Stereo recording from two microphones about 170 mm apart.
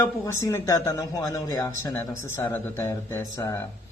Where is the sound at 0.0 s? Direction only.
15° left (ahead or behind).